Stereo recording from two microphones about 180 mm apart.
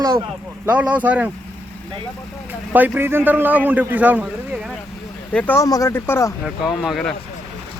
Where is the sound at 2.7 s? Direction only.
10° right (ahead or behind).